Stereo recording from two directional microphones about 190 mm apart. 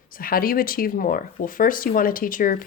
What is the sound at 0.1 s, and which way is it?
Speech, 50° left (ahead or behind).